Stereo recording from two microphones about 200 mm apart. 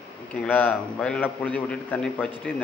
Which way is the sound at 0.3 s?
10° left (ahead or behind).